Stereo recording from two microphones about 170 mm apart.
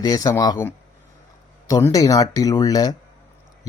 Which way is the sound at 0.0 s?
20° left (ahead or behind).